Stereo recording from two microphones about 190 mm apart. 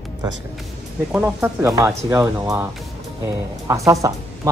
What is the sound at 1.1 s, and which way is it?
Speech, 10° right (ahead or behind).